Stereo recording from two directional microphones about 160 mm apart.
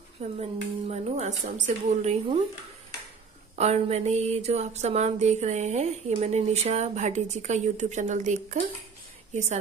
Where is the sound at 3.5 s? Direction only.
40° right (ahead or behind).